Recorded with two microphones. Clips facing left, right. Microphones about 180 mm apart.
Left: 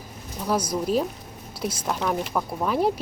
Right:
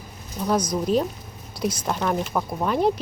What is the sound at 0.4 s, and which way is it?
A woman's voice, 5° left (ahead or behind).